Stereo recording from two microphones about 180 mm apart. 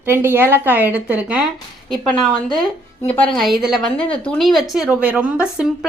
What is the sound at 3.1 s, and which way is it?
A woman's voice, 5° left (ahead or behind).